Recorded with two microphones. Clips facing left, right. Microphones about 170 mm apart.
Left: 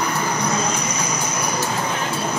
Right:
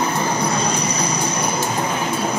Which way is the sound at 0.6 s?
35° right (ahead or behind).